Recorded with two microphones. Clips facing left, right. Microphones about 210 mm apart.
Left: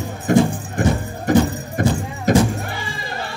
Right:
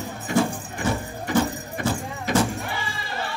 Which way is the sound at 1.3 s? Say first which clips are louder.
Left 7 dB; 45° left (ahead or behind).